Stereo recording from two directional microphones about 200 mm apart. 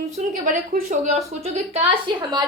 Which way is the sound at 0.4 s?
40° right (ahead or behind).